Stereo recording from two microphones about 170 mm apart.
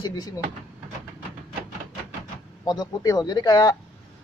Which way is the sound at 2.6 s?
20° left (ahead or behind).